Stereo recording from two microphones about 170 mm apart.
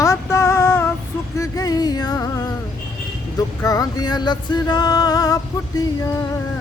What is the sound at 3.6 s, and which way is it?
Speech, 20° left (ahead or behind).